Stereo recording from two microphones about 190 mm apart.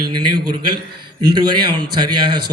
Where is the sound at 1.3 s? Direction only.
25° right (ahead or behind).